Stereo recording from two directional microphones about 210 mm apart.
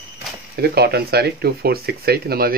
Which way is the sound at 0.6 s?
50° right (ahead or behind).